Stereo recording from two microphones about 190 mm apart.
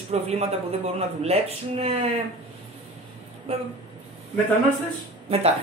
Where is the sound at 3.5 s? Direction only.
30° right (ahead or behind).